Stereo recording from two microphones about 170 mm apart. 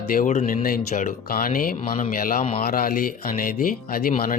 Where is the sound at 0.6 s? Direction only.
55° left (ahead or behind).